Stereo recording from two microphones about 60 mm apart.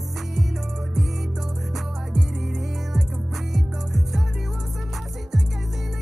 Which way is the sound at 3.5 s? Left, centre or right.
Centre.